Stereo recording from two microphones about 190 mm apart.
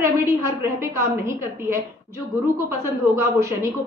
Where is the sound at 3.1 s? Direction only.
15° right (ahead or behind).